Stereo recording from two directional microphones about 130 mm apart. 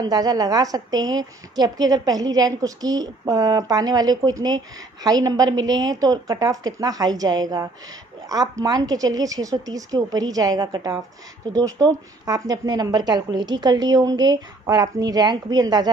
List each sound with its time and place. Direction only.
0.0 s a woman's voice: 30° right (ahead or behind)